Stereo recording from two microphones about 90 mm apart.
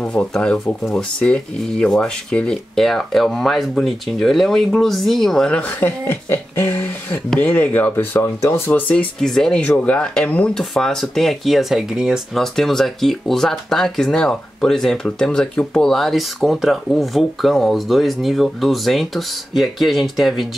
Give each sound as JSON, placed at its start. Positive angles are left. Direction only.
{"t": 0.0, "sound": "speech", "side_deg": 10}
{"t": 5.6, "sound": "speech", "side_deg": 20}
{"t": 8.8, "sound": "speech", "side_deg": 10}
{"t": 10.6, "sound": "speech", "side_deg": 5}